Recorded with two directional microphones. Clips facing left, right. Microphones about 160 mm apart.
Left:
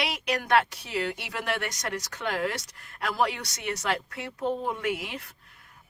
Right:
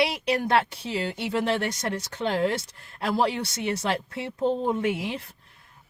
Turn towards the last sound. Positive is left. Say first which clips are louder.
# right 4 dB
turn(degrees=-30)  # may be behind; listen again after turning